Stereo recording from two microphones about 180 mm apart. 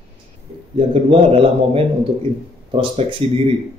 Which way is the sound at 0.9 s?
35° right (ahead or behind).